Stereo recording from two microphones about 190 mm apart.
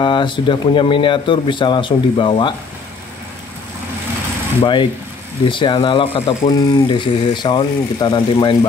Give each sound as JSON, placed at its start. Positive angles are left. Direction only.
{"t": 0.0, "sound": "speech", "side_deg": 25}
{"t": 4.6, "sound": "speech", "side_deg": 25}